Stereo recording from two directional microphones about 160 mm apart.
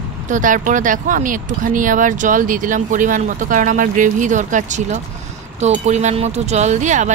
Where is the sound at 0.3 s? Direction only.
55° right (ahead or behind).